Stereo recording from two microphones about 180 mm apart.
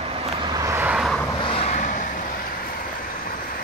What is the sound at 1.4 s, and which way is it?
Vehicle, 35° left (ahead or behind).